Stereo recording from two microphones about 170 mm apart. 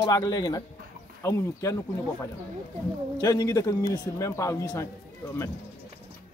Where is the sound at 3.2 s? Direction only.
20° left (ahead or behind).